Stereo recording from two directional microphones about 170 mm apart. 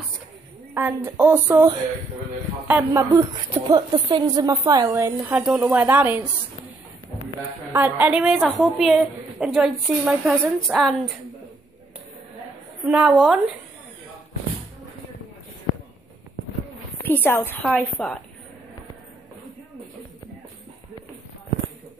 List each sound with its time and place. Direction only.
0.7 s speech: 10° right (ahead or behind)
2.7 s speech: 15° right (ahead or behind)
3.6 s a woman's voice: 25° right (ahead or behind)
5.4 s speech: 5° right (ahead or behind)
7.7 s a woman's voice: 10° right (ahead or behind)
12.8 s a woman's voice: 5° right (ahead or behind)
17.0 s a woman's voice: 10° left (ahead or behind)